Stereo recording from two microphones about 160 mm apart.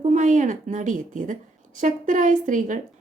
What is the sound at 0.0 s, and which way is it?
A woman's voice, 50° right (ahead or behind).